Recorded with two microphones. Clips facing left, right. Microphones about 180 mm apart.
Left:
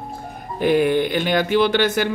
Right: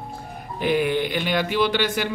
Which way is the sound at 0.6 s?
50° left (ahead or behind).